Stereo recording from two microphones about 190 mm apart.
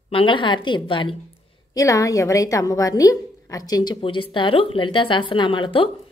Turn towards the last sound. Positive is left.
turn(degrees=25)  # may be behind; listen again after turning